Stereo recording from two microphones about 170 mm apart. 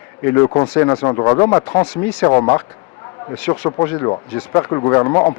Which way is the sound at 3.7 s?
20° left (ahead or behind).